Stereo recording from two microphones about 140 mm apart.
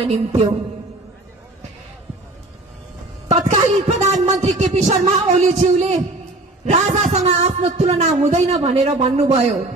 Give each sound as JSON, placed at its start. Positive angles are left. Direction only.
{"t": 0.0, "sound": "a man's voice", "side_deg": -45}
{"t": 3.3, "sound": "a sound", "side_deg": -60}
{"t": 3.9, "sound": "a man's voice", "side_deg": -50}